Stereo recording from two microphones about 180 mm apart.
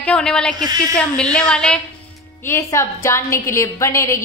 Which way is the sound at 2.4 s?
15° left (ahead or behind).